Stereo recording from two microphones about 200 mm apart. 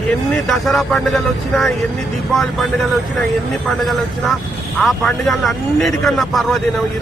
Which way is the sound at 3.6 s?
Centre (ahead or behind).